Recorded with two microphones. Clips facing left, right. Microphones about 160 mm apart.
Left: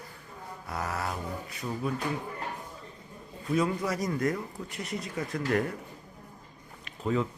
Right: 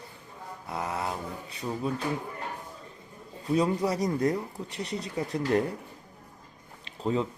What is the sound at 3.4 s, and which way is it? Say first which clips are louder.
Speech: right 2 dB; 35° right (ahead or behind).